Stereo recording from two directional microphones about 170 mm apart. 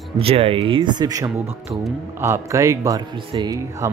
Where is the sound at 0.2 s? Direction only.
35° right (ahead or behind).